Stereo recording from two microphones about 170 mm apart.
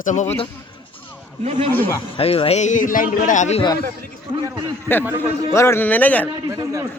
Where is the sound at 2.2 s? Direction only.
35° left (ahead or behind).